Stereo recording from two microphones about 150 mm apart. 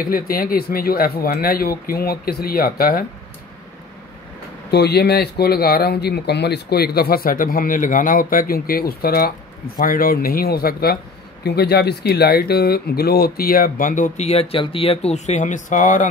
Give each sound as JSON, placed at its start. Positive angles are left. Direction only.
{"t": 0.0, "sound": "speech", "side_deg": 75}
{"t": 4.6, "sound": "speech", "side_deg": 90}
{"t": 9.8, "sound": "speech", "side_deg": 75}